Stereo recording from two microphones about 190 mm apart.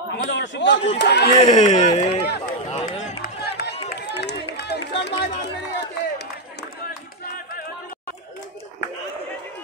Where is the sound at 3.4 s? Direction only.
60° left (ahead or behind).